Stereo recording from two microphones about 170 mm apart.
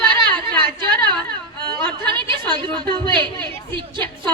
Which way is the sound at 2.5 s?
30° right (ahead or behind).